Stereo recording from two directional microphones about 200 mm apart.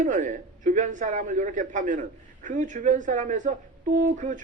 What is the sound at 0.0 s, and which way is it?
A man's voice, 40° right (ahead or behind).